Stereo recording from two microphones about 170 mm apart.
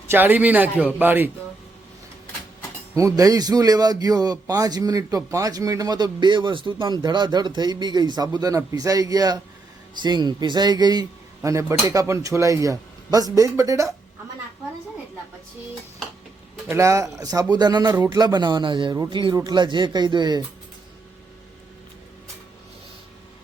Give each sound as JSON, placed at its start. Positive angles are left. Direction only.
{"t": 0.1, "sound": "a man's voice", "side_deg": -10}
{"t": 2.9, "sound": "speech", "side_deg": -20}
{"t": 16.6, "sound": "speech", "side_deg": -15}